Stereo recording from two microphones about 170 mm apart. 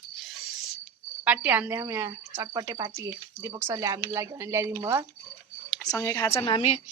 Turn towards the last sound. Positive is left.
turn(degrees=35)  # may be behind; listen again after turning